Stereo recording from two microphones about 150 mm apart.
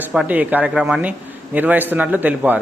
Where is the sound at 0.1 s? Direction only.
5° right (ahead or behind).